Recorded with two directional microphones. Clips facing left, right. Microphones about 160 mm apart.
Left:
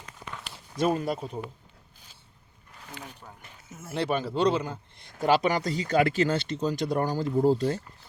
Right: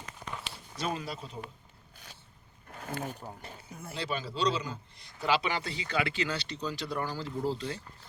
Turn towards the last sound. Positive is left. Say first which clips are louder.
# left 10 dB
turn(degrees=45)  # may be behind; listen again after turning